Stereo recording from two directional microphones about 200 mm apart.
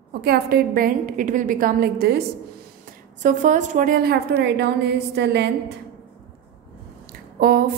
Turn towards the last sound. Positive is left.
turn(degrees=-45)  # may be behind; listen again after turning